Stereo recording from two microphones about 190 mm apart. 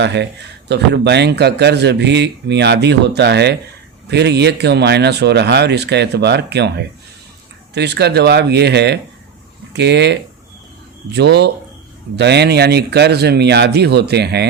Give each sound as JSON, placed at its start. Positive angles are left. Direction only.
{"t": 0.0, "sound": "speech", "side_deg": -65}